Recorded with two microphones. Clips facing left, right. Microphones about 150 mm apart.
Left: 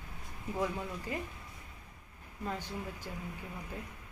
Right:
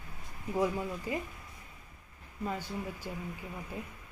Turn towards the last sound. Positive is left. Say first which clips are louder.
# right 3 dB
turn(degrees=-10)  # may be behind; listen again after turning